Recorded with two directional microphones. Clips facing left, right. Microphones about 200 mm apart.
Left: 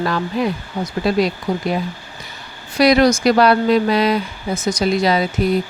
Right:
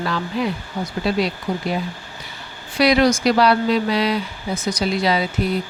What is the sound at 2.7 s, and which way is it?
Speech, 45° left (ahead or behind).